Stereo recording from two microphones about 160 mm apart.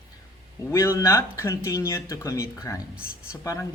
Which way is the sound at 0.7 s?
20° left (ahead or behind).